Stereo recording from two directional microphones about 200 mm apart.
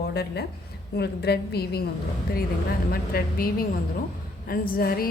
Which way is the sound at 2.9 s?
45° left (ahead or behind).